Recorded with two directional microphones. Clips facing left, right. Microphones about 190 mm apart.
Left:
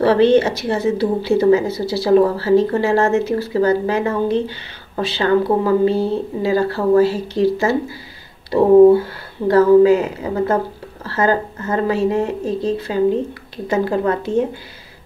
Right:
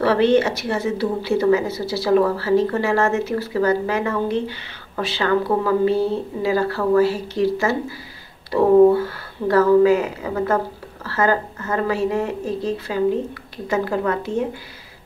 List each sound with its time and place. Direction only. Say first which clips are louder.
0.0 s a woman's voice: left 3 dB; 30° left (ahead or behind)